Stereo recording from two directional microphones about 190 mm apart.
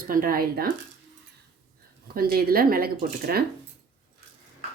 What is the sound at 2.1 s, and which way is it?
Speech, 50° right (ahead or behind).